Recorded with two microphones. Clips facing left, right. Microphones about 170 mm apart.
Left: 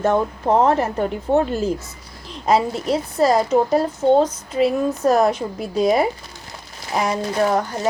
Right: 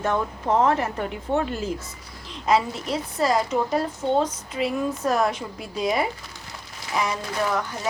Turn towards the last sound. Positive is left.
turn(degrees=40)  # may be behind; listen again after turning